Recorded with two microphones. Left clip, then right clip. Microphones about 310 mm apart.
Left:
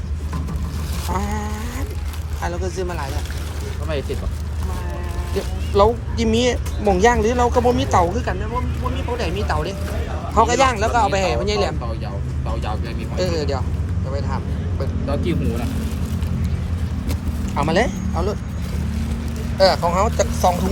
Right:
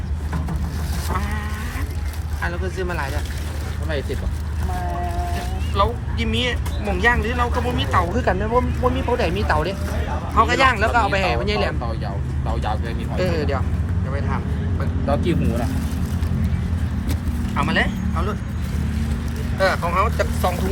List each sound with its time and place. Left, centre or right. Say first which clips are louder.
2.4 s speech: left 1 dB; centre
5.7 s speech: left 6 dB; centre
8.1 s speech: right 5 dB; centre
13.1 s speech: left 1 dB; centre
17.5 s vehicle: left 2 dB; centre
19.5 s speech: left 3 dB; centre